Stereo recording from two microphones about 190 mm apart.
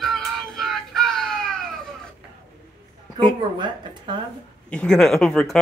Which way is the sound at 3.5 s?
25° right (ahead or behind).